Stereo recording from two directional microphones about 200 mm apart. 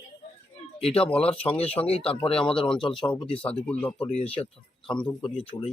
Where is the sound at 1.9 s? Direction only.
30° left (ahead or behind).